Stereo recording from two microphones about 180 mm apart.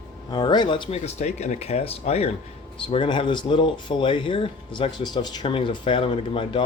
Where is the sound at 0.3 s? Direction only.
25° left (ahead or behind).